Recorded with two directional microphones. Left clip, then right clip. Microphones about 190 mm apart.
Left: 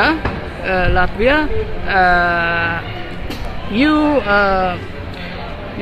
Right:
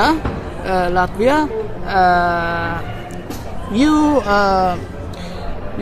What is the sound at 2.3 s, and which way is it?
Music, 15° right (ahead or behind).